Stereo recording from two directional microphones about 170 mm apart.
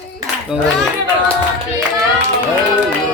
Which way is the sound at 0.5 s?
5° right (ahead or behind).